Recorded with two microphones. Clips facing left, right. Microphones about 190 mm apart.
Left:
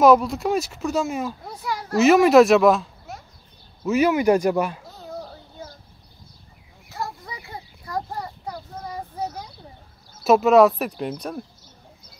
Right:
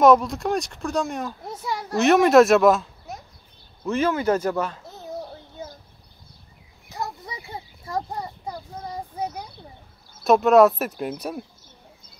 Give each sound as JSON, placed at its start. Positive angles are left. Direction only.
{"t": 0.0, "sound": "speech", "side_deg": 0}
{"t": 1.4, "sound": "speech", "side_deg": -20}
{"t": 1.9, "sound": "speech", "side_deg": 0}
{"t": 6.9, "sound": "a sound", "side_deg": -20}
{"t": 10.2, "sound": "speech", "side_deg": 0}